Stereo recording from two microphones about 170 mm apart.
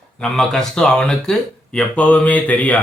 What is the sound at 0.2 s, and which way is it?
Speech, 5° left (ahead or behind).